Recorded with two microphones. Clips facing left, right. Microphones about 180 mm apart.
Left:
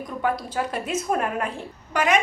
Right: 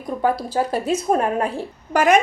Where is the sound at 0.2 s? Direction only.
35° right (ahead or behind).